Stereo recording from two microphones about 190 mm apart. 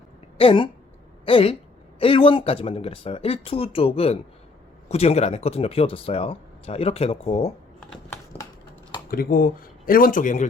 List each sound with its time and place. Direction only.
0.3 s a sound: 25° left (ahead or behind)
1.2 s a woman's voice: 30° left (ahead or behind)
9.0 s speech: 50° left (ahead or behind)